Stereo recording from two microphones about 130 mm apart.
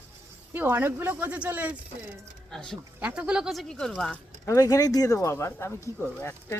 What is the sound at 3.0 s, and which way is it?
Speech, 10° right (ahead or behind).